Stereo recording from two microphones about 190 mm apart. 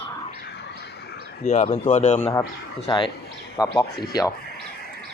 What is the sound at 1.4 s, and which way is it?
Speech, 35° left (ahead or behind).